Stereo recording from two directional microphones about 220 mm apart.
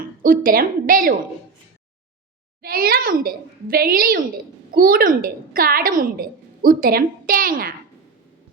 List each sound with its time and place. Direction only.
0.2 s a woman's voice: 40° right (ahead or behind)
2.6 s a child's voice: 45° right (ahead or behind)